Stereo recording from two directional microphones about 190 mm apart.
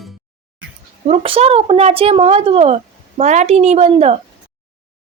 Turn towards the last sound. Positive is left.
turn(degrees=-35)  # may be behind; listen again after turning